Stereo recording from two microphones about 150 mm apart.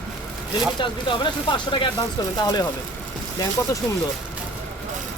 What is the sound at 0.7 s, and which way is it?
Speech, 35° left (ahead or behind).